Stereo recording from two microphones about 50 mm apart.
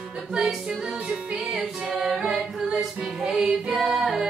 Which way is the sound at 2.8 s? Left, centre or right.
Centre.